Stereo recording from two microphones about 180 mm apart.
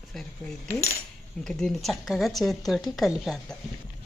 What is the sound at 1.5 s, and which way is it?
Speech, 5° left (ahead or behind).